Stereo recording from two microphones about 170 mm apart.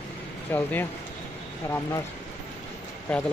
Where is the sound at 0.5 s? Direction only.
10° left (ahead or behind).